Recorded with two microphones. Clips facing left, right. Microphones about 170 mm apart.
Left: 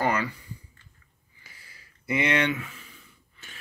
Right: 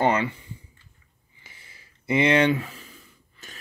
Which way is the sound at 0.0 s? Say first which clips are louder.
Right 4 dB; 25° right (ahead or behind).